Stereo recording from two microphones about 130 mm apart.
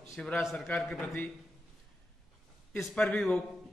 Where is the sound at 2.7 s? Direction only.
5° left (ahead or behind).